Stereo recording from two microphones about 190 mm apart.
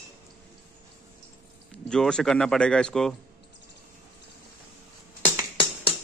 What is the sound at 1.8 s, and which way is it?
Speech, 5° left (ahead or behind).